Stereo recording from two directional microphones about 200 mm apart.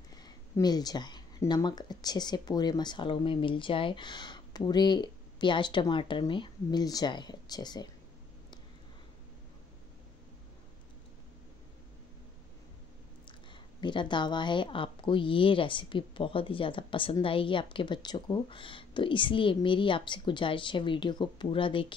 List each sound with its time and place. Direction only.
0.1 s a woman's voice: 20° left (ahead or behind)
13.5 s a woman's voice: 25° left (ahead or behind)